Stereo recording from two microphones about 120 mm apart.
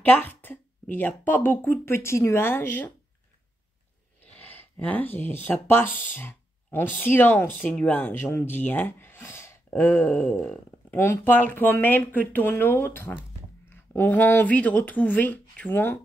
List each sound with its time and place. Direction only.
0.0 s speech: 15° left (ahead or behind)
4.3 s speech: 15° left (ahead or behind)
10.4 s a sound: 10° left (ahead or behind)
11.0 s speech: 20° left (ahead or behind)